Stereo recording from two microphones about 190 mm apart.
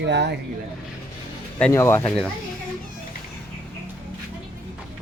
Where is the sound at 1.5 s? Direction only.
10° left (ahead or behind).